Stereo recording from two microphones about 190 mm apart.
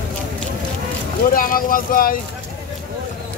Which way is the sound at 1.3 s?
45° left (ahead or behind).